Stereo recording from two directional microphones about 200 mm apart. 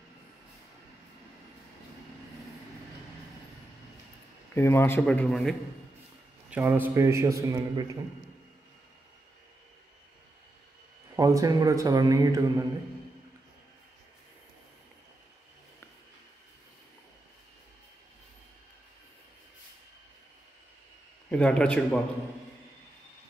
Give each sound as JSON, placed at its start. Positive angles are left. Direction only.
{"t": 4.6, "sound": "speech", "side_deg": 10}
{"t": 6.5, "sound": "a man's voice", "side_deg": -10}
{"t": 11.1, "sound": "a man's voice", "side_deg": -15}
{"t": 21.3, "sound": "a man's voice", "side_deg": 5}